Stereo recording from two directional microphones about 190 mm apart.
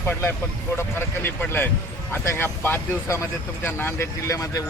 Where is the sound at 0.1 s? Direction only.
10° left (ahead or behind).